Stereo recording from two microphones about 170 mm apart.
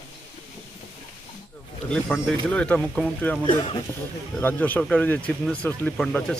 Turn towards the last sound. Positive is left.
turn(degrees=5)  # may be behind; listen again after turning